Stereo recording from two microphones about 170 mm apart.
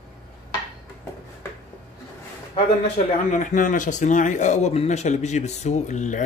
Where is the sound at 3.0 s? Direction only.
45° left (ahead or behind).